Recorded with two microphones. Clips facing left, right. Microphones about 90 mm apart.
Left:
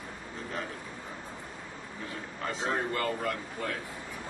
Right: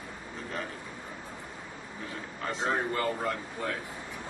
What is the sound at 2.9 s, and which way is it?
Speech, 25° right (ahead or behind).